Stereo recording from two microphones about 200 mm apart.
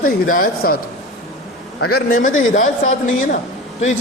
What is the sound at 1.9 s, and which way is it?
A man's voice, 45° left (ahead or behind).